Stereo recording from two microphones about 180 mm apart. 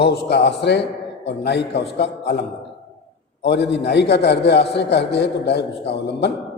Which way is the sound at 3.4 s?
70° left (ahead or behind).